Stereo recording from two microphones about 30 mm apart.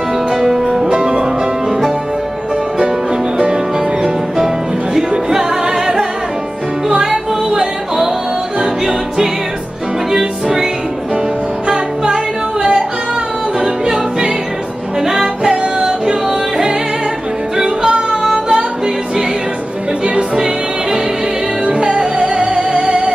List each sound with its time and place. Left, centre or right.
0.3 s music: centre
0.8 s music: right
5.3 s music: centre
10.1 s music: centre
13.6 s music: right
15.0 s music: centre
18.1 s music: centre
20.2 s music: right